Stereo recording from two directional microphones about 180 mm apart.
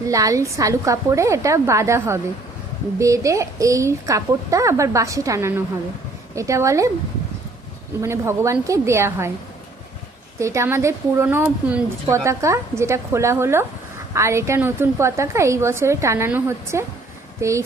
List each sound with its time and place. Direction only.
0.1 s a woman's voice: 20° right (ahead or behind)
8.0 s a woman's voice: 15° right (ahead or behind)
10.4 s a woman's voice: 15° right (ahead or behind)